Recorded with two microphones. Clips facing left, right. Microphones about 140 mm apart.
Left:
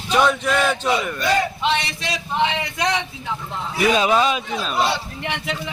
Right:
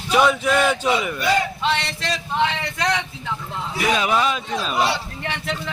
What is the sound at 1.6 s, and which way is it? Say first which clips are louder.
Speech: left 1 dB; 15° left (ahead or behind).